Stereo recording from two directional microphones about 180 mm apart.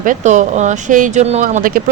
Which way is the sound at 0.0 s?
45° right (ahead or behind).